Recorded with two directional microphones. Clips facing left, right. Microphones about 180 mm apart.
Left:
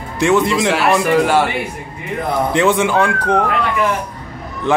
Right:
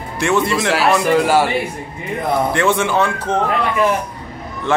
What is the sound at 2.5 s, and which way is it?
Speech, 15° left (ahead or behind).